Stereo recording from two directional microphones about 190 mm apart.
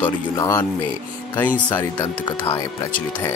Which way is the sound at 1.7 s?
10° left (ahead or behind).